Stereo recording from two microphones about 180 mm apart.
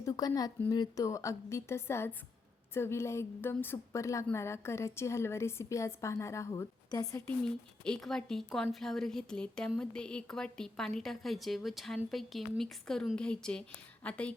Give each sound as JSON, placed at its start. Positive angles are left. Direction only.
{"t": 0.0, "sound": "a woman's voice", "side_deg": 20}
{"t": 7.4, "sound": "a woman's voice", "side_deg": 5}